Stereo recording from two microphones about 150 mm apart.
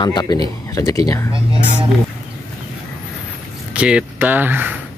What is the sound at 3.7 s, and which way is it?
Speech, 5° right (ahead or behind).